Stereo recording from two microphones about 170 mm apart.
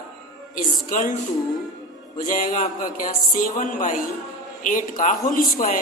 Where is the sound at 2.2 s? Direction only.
50° left (ahead or behind).